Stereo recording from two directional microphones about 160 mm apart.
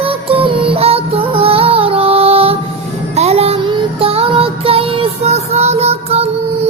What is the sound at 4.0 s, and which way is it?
Child singing, 35° right (ahead or behind).